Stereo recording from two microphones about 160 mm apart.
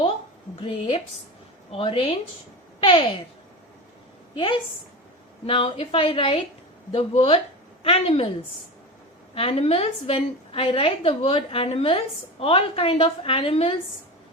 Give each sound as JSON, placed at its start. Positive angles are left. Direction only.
{"t": 0.6, "sound": "a woman's voice", "side_deg": 35}
{"t": 4.4, "sound": "a woman's voice", "side_deg": 30}
{"t": 9.3, "sound": "a woman's voice", "side_deg": 35}